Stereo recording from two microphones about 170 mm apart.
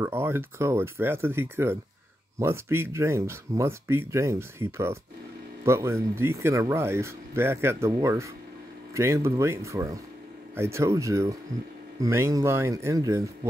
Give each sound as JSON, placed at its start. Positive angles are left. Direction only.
{"t": 0.0, "sound": "speech", "side_deg": -15}